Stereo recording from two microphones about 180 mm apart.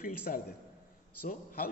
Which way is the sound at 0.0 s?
55° left (ahead or behind).